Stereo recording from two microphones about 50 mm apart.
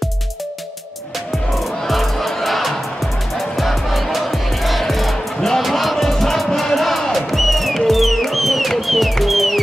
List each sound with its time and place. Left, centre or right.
1.3 s music: centre